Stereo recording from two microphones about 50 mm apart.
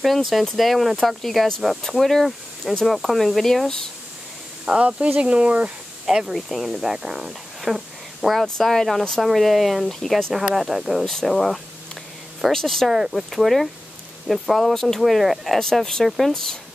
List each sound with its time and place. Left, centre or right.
0.0 s speech: centre
4.6 s speech: right
6.0 s speech: centre
9.8 s speech: centre
10.3 s speech: centre
12.9 s speech: centre
15.0 s speech: centre